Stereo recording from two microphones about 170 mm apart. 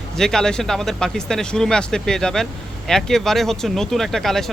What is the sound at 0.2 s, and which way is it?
Speech, 5° left (ahead or behind).